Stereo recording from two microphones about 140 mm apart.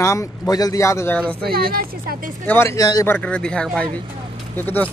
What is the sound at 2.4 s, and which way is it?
Speech, 15° left (ahead or behind).